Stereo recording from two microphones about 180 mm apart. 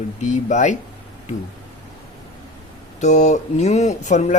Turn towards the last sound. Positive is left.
turn(degrees=40)  # may be behind; listen again after turning